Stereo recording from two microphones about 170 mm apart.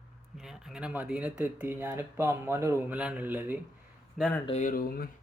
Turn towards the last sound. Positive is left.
turn(degrees=60)  # may be behind; listen again after turning